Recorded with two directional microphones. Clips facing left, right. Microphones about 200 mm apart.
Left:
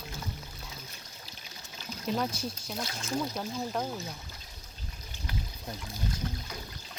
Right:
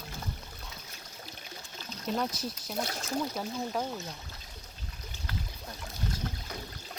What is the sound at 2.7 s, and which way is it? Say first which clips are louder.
Speech: right 3 dB; 65° right (ahead or behind).